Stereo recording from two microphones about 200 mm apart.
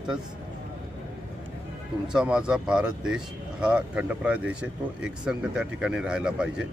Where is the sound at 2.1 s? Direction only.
5° right (ahead or behind).